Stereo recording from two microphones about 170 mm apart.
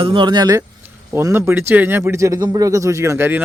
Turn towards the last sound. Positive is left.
turn(degrees=-15)  # may be behind; listen again after turning